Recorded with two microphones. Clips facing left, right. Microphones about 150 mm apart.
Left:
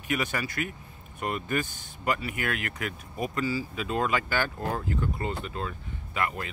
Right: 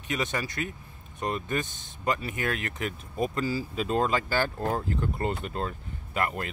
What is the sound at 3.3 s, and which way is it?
Speech, 40° right (ahead or behind).